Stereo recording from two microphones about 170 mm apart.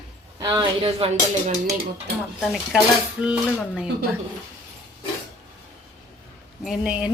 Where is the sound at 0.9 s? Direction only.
35° right (ahead or behind).